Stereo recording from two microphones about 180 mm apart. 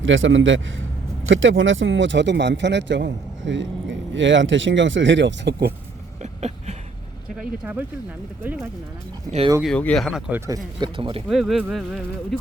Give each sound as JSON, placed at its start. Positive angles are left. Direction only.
{"t": 0.0, "sound": "speech", "side_deg": -90}
{"t": 6.2, "sound": "a sound", "side_deg": -40}
{"t": 7.3, "sound": "speech", "side_deg": -10}
{"t": 9.6, "sound": "speech", "side_deg": 5}
{"t": 10.8, "sound": "speech", "side_deg": -25}
{"t": 11.3, "sound": "speech", "side_deg": 0}